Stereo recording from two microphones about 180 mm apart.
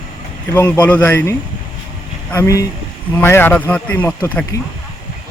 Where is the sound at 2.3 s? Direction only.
15° left (ahead or behind).